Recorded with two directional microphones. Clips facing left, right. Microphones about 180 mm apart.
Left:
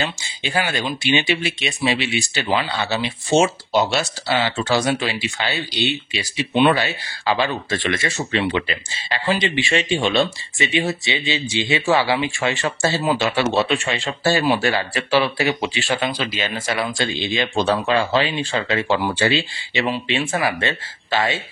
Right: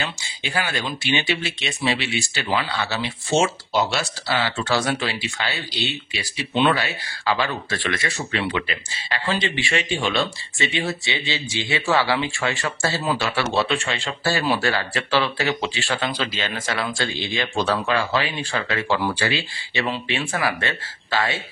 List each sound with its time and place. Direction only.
0.0 s speech: 25° left (ahead or behind)